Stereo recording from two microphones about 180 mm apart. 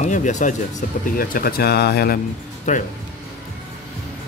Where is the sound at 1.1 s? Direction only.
55° left (ahead or behind).